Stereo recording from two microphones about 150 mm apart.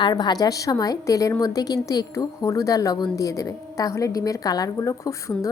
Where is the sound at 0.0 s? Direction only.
30° left (ahead or behind).